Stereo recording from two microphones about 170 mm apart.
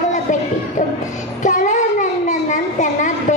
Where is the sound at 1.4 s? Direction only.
45° left (ahead or behind).